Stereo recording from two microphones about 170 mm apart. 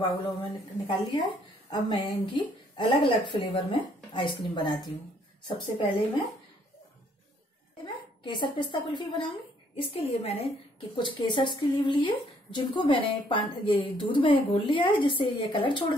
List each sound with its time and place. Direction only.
0.0 s a woman's voice: 30° left (ahead or behind)
7.8 s a woman's voice: 30° left (ahead or behind)